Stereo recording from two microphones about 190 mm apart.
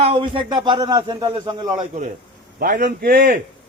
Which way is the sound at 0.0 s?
30° right (ahead or behind).